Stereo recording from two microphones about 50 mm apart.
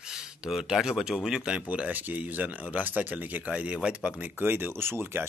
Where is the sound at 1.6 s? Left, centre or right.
Right.